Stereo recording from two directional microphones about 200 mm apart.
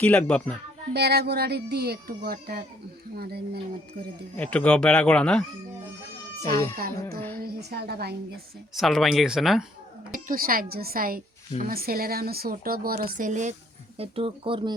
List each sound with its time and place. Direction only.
0.0 s speech: 5° left (ahead or behind)
0.9 s a woman's voice: 55° right (ahead or behind)
4.5 s speech: 5° left (ahead or behind)
6.7 s a woman's voice: 50° right (ahead or behind)
8.7 s speech: centre (ahead or behind)
10.1 s a woman's voice: 45° right (ahead or behind)
14.0 s speech: 30° right (ahead or behind)